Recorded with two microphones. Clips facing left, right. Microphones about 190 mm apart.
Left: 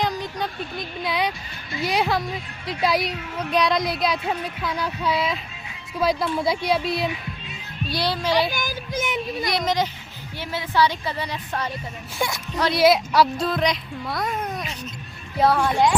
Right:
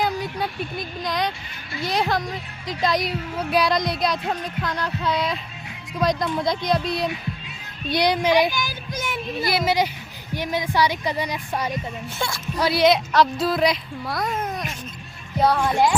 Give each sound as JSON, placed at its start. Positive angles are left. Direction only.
{"t": 0.0, "sound": "a sound", "side_deg": -5}
{"t": 1.0, "sound": "speech", "side_deg": 5}
{"t": 3.1, "sound": "speech", "side_deg": -5}
{"t": 7.9, "sound": "speech", "side_deg": -20}
{"t": 8.9, "sound": "speech", "side_deg": 20}
{"t": 9.4, "sound": "speech", "side_deg": -5}
{"t": 12.2, "sound": "speech", "side_deg": 15}
{"t": 12.5, "sound": "speech", "side_deg": -10}
{"t": 12.8, "sound": "speech", "side_deg": 5}